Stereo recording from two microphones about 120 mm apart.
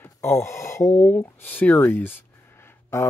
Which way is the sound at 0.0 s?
25° left (ahead or behind).